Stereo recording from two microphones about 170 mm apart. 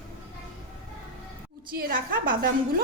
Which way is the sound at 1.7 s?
60° right (ahead or behind).